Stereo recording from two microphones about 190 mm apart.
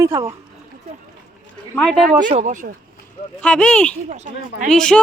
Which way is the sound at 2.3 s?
40° right (ahead or behind).